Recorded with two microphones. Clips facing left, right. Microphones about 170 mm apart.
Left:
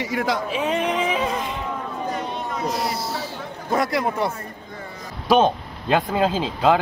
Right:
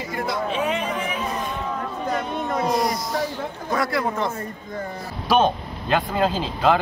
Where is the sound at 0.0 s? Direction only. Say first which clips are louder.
Left 4 dB; 90° left.